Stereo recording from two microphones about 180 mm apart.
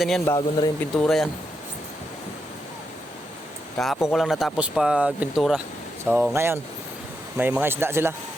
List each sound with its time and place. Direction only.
0.3 s speech: 25° left (ahead or behind)
0.8 s speech: 5° left (ahead or behind)
3.8 s speech: centre (ahead or behind)